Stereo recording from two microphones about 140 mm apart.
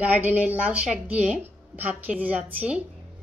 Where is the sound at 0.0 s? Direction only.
10° right (ahead or behind).